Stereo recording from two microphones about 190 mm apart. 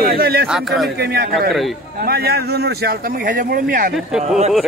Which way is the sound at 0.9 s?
55° right (ahead or behind).